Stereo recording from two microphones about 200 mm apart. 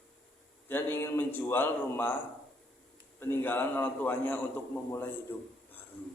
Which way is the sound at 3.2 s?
10° left (ahead or behind).